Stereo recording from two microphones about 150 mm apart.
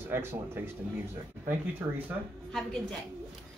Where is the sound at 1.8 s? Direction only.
15° right (ahead or behind).